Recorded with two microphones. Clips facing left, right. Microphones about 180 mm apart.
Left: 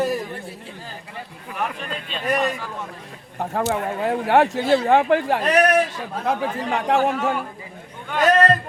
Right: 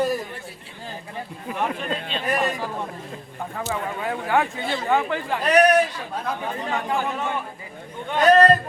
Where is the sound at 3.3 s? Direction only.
65° left (ahead or behind).